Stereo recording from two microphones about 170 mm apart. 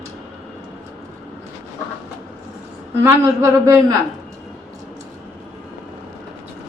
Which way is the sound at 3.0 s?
15° right (ahead or behind).